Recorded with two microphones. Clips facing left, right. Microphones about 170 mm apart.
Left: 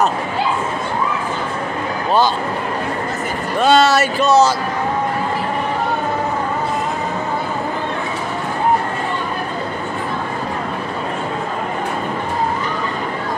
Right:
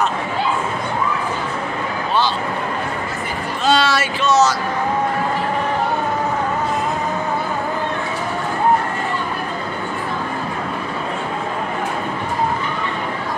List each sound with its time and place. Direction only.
3.6 s speech: 45° left (ahead or behind)